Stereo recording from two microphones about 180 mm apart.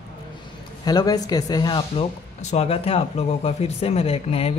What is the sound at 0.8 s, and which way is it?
A man's voice, 20° left (ahead or behind).